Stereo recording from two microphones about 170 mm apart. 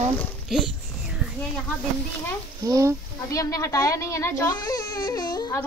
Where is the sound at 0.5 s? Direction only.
5° right (ahead or behind).